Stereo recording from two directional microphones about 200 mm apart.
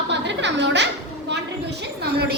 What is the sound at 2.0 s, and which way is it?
Speech, 55° right (ahead or behind).